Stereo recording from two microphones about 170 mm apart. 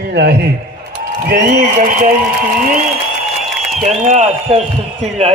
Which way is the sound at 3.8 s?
45° right (ahead or behind).